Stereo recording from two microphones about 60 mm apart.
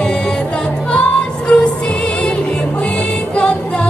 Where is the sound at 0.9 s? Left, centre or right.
Centre.